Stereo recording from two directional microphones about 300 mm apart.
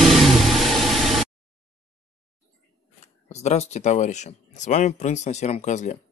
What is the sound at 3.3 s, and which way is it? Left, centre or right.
Speech, left.